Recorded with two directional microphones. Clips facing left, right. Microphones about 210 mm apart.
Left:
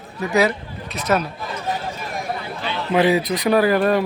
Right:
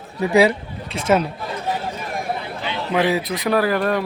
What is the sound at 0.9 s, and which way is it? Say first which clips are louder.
Speech: right 3 dB; 30° right (ahead or behind).